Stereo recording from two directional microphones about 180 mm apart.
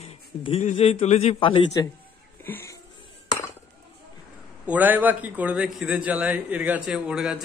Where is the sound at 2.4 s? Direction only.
15° left (ahead or behind).